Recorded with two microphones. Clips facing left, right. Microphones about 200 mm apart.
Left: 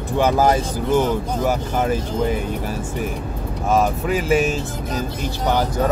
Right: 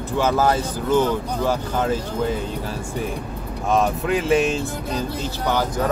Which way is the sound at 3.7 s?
Centre (ahead or behind).